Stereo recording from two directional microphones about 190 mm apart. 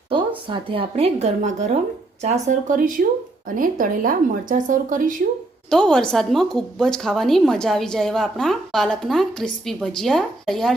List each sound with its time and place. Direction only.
0.4 s speech: 30° right (ahead or behind); by 5.1 s 45° right (ahead or behind)
5.7 s a woman's voice: 5° left (ahead or behind)